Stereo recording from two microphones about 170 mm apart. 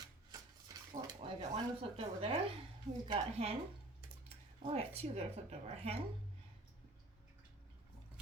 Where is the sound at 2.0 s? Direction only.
35° right (ahead or behind).